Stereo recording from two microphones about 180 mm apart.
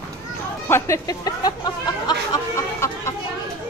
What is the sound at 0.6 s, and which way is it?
Speech, 15° left (ahead or behind).